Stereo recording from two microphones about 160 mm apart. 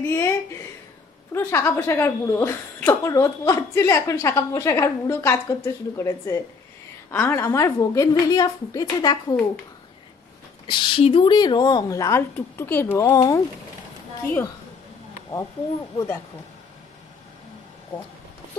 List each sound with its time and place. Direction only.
0.0 s a woman's voice: 20° left (ahead or behind)
1.3 s a woman's voice: 15° left (ahead or behind)
10.7 s speech: 30° left (ahead or behind)